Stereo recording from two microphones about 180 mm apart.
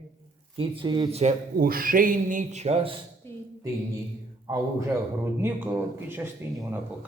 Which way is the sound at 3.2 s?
15° left (ahead or behind).